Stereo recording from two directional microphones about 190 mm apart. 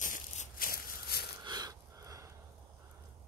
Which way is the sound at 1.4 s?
20° right (ahead or behind).